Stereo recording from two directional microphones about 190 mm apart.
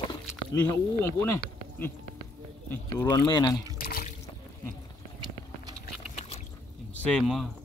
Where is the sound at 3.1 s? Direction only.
20° left (ahead or behind).